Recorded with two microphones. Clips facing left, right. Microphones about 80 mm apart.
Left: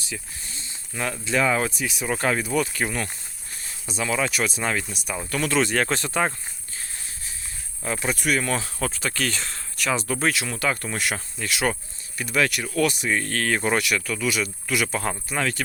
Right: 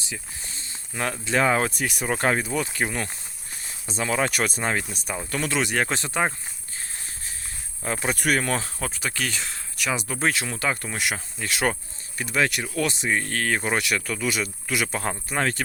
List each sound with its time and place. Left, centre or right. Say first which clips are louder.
0.6 s speech: right 1 dB; right
4.6 s speech: even; right
7.9 s speech: even; right
8.1 s speech: right 1 dB; right
8.8 s speech: left 2 dB; centre
10.8 s speech: left 1 dB; centre
11.4 s speech: even; right; by 13.7 s centre
13.7 s speech: left 1 dB; right